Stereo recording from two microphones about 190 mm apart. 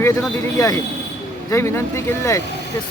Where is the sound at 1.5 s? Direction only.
15° left (ahead or behind).